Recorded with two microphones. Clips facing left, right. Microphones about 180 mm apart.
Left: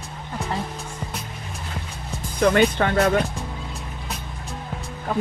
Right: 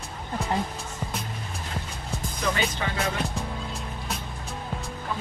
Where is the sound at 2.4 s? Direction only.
60° left (ahead or behind).